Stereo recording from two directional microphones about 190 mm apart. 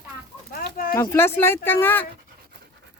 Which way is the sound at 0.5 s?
50° left (ahead or behind).